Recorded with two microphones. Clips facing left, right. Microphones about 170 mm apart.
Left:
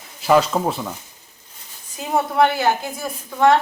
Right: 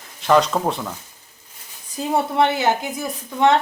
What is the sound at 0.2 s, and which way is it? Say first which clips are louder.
Speech: left 1 dB; 5° left (ahead or behind).